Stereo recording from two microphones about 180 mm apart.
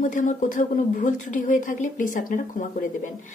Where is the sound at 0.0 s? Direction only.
45° left (ahead or behind).